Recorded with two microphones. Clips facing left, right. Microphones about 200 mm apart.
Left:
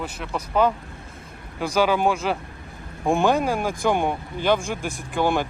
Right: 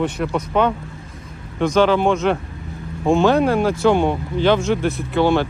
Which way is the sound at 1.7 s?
10° left (ahead or behind).